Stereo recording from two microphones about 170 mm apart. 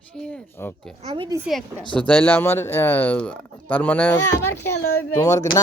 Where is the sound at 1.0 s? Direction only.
30° right (ahead or behind).